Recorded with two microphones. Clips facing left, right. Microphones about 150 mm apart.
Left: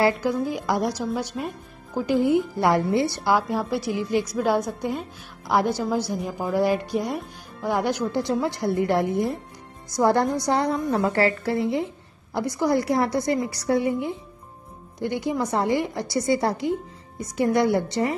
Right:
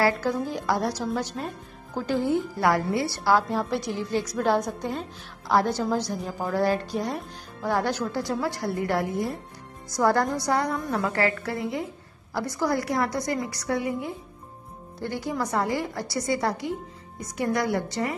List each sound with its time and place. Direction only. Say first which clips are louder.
0.0 s a woman's voice: left 2 dB; 15° left (ahead or behind)